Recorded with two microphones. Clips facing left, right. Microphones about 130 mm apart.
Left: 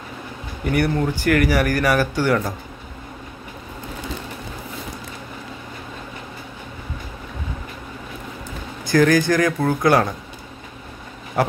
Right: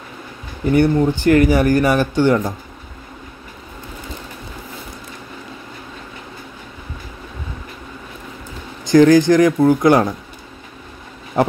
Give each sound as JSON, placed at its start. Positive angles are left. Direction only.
{"t": 0.7, "sound": "speech", "side_deg": -25}
{"t": 8.8, "sound": "speech", "side_deg": -20}